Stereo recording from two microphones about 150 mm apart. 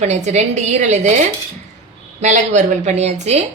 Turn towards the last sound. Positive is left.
turn(degrees=-50)  # may be behind; listen again after turning